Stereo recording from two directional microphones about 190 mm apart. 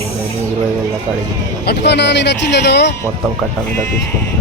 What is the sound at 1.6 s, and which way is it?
Speech, 60° left (ahead or behind).